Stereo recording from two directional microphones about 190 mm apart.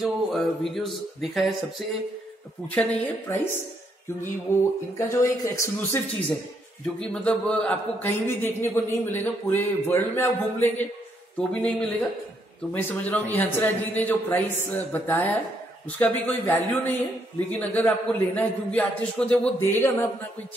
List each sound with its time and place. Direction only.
0.0 s a man's voice: centre (ahead or behind)
4.9 s a man's voice: 15° left (ahead or behind)
7.0 s a man's voice: 5° left (ahead or behind)
12.7 s a man's voice: 10° left (ahead or behind)